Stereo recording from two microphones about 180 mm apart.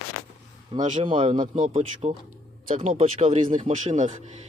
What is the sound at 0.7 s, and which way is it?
Speech, 30° right (ahead or behind).